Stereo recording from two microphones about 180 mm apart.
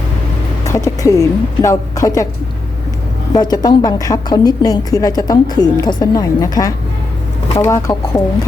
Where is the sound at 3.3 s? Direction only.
20° left (ahead or behind).